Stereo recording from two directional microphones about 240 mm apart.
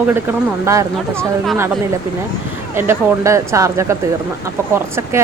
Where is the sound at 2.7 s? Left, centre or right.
Centre.